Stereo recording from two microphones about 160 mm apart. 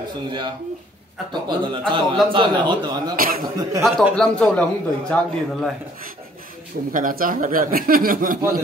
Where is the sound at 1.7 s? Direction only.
30° right (ahead or behind).